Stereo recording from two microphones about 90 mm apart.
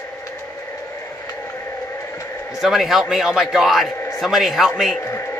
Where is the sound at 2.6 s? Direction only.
5° right (ahead or behind).